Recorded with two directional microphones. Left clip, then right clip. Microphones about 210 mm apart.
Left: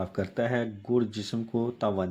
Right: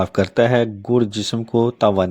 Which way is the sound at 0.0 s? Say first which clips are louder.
Right 13 dB; 35° right (ahead or behind).